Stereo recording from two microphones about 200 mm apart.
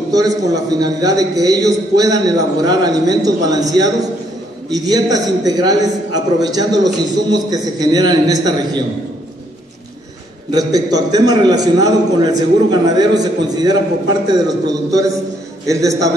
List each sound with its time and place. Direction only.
0.1 s a man's voice: 20° right (ahead or behind)
10.5 s a man's voice: 20° right (ahead or behind)